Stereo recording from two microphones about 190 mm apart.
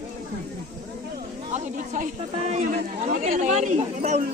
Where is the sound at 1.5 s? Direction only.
45° right (ahead or behind).